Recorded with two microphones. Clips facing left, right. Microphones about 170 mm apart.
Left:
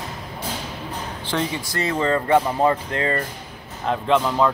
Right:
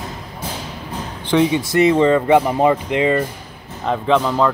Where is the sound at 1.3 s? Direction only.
5° right (ahead or behind).